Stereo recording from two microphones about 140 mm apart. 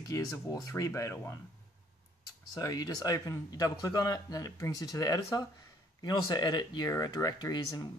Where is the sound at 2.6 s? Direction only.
25° left (ahead or behind).